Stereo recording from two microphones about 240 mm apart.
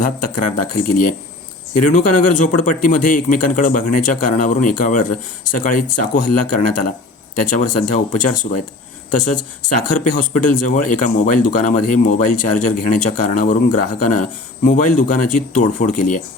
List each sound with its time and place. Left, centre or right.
0.0 s speech: left
9.6 s speech: left